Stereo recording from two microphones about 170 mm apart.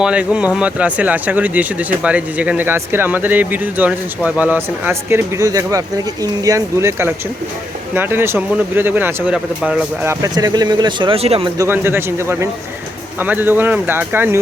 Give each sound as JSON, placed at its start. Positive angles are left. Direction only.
{"t": 0.0, "sound": "speech", "side_deg": -5}
{"t": 11.5, "sound": "speech", "side_deg": -15}